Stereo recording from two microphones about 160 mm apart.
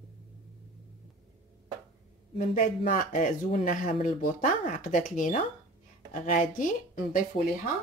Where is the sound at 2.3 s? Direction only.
55° left (ahead or behind).